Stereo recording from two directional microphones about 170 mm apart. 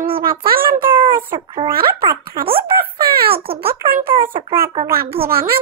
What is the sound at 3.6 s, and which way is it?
Speech, 60° right (ahead or behind).